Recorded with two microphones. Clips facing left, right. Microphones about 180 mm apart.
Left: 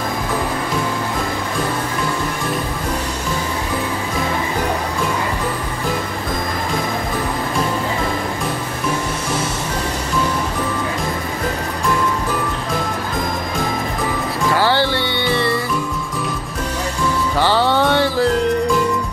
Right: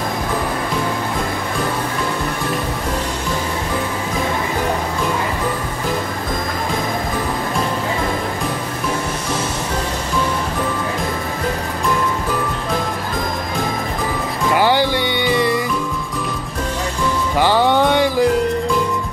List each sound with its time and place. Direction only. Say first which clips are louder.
14.5 s music: right 2 dB; 15° right (ahead or behind)
17.4 s music: right 2 dB; 15° right (ahead or behind)